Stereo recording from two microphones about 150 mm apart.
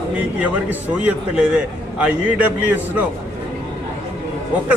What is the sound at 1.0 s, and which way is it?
A man's voice, 10° right (ahead or behind).